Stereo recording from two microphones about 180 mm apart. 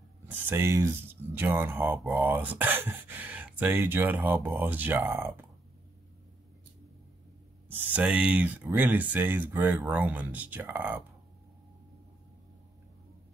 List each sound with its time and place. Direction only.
0.3 s speech: 15° right (ahead or behind)
7.6 s speech: 10° right (ahead or behind)